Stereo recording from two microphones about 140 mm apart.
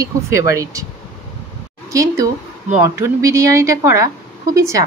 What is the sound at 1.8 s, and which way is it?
Speech, 25° right (ahead or behind).